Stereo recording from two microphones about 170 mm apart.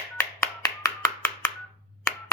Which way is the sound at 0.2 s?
20° left (ahead or behind).